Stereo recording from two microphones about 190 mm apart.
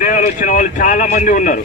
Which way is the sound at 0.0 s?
45° left (ahead or behind).